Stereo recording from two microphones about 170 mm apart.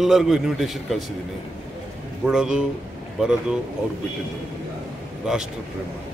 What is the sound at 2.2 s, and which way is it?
Speech, 5° right (ahead or behind).